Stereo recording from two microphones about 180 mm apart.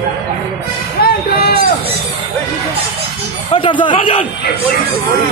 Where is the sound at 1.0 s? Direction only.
55° left (ahead or behind).